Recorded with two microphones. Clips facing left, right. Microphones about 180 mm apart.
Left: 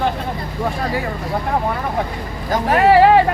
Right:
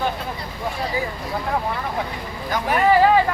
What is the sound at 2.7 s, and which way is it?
Speech, 70° left (ahead or behind).